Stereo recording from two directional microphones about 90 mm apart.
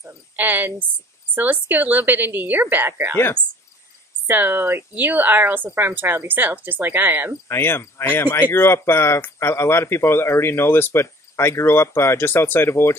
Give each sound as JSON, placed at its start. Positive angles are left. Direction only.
{"t": 0.0, "sound": "a woman's voice", "side_deg": -20}
{"t": 4.3, "sound": "speech", "side_deg": -20}
{"t": 7.4, "sound": "speech", "side_deg": 25}